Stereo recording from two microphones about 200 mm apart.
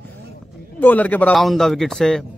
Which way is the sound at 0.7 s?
10° left (ahead or behind).